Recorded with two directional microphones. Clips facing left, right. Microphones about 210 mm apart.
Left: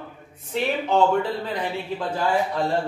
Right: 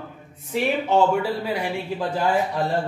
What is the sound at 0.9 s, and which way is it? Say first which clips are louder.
Speech: even; 10° right (ahead or behind).